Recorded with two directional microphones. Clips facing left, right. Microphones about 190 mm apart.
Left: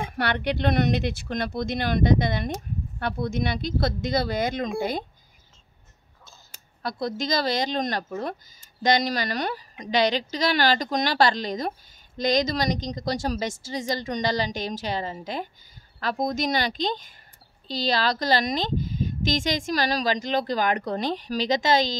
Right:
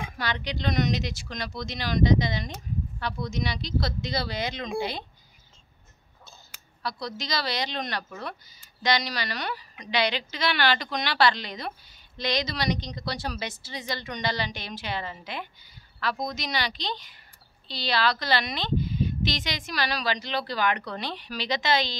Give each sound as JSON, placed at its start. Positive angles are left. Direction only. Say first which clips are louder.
{"t": 0.0, "sound": "speech", "louder": "left 6 dB", "side_deg": 60}
{"t": 6.8, "sound": "speech", "louder": "left 6 dB", "side_deg": 50}